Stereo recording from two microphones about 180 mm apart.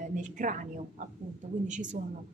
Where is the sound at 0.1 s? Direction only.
45° right (ahead or behind).